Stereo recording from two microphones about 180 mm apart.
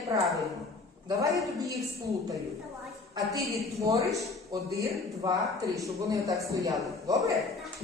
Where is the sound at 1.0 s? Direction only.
15° right (ahead or behind).